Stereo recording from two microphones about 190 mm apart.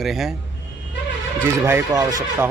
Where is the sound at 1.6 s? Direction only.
15° right (ahead or behind).